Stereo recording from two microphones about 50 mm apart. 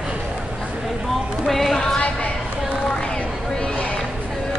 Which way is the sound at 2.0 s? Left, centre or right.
Left.